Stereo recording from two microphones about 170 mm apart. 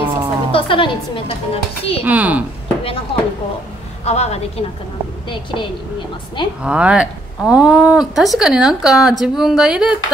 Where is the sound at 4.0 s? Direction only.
40° left (ahead or behind).